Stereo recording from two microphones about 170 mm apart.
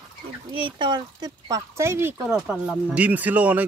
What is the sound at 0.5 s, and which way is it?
Speech, 30° right (ahead or behind).